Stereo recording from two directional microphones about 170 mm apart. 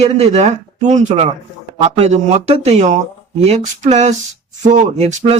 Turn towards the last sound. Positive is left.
turn(degrees=-40)  # may be behind; listen again after turning